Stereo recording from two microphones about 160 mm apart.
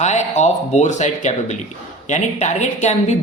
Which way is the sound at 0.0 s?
45° left (ahead or behind).